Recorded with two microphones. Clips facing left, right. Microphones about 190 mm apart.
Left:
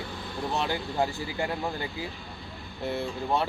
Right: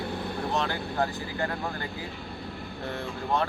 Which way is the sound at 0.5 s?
15° left (ahead or behind).